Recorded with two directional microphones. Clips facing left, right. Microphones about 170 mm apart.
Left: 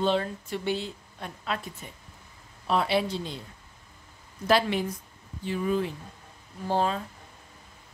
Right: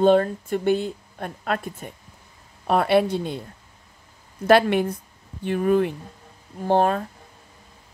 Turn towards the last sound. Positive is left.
turn(degrees=-55)  # may be behind; listen again after turning